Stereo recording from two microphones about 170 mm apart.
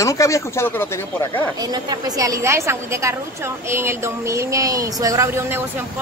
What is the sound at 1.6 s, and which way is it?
A woman's voice, 25° right (ahead or behind).